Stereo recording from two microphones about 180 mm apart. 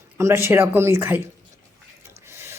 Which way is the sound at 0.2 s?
15° right (ahead or behind).